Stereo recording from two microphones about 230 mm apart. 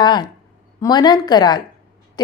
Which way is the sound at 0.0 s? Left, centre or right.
Centre.